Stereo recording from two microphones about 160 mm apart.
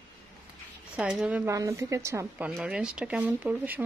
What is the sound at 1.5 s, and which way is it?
Speech, 20° right (ahead or behind).